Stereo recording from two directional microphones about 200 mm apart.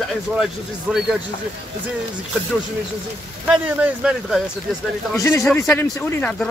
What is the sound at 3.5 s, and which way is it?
Speech, 5° right (ahead or behind).